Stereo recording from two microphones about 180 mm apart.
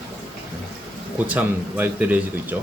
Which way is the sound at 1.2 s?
10° right (ahead or behind).